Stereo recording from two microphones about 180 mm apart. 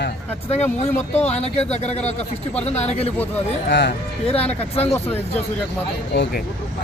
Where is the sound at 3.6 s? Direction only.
75° left (ahead or behind).